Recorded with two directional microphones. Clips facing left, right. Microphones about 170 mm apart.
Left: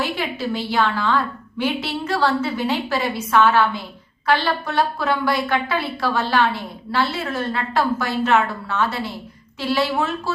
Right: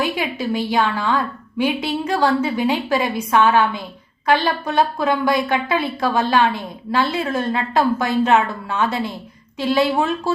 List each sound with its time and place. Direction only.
0.0 s a woman's voice: 15° right (ahead or behind)